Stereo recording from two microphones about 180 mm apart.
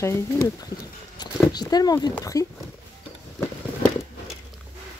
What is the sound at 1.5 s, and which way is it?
Speech, 20° left (ahead or behind).